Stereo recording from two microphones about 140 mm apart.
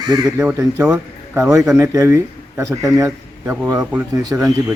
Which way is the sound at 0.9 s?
5° right (ahead or behind).